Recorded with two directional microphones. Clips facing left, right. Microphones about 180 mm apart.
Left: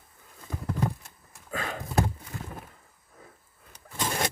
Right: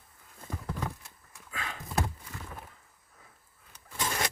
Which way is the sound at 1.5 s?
45° left (ahead or behind).